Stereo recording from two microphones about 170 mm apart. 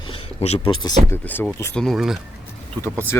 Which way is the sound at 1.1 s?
10° left (ahead or behind).